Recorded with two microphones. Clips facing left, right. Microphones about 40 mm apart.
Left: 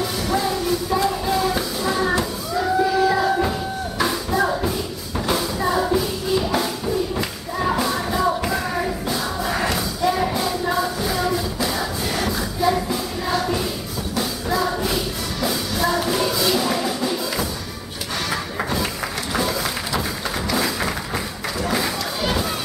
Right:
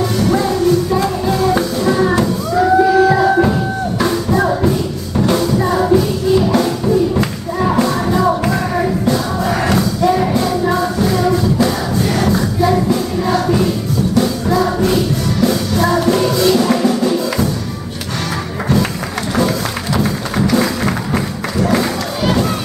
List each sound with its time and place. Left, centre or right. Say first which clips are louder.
0.2 s music: right 8 dB; centre
1.9 s music: right 7 dB; centre
2.5 s music: right 8 dB; right
4.6 s music: right 9 dB; centre
20.4 s music: right 7 dB; centre
21.5 s crowd: right 8 dB; centre